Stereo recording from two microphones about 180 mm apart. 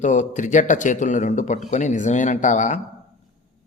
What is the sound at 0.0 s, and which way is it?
A man's voice, 40° left (ahead or behind).